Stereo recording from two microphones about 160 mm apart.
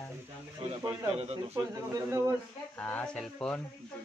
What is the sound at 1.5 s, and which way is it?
Speech, 20° right (ahead or behind).